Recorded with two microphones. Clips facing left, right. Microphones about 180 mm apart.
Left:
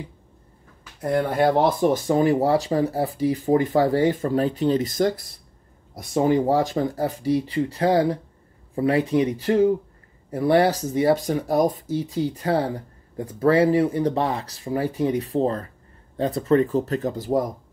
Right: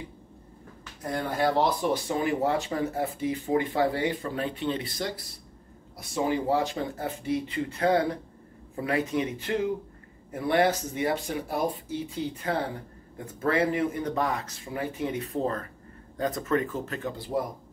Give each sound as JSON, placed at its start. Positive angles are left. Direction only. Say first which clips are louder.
{"t": 1.0, "sound": "speech", "louder": "left 7 dB", "side_deg": 55}